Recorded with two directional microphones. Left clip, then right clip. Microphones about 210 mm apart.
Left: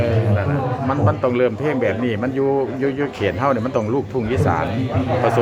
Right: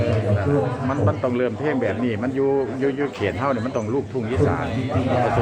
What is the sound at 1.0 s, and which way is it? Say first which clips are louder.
A man's voice: left 5 dB; 15° left (ahead or behind).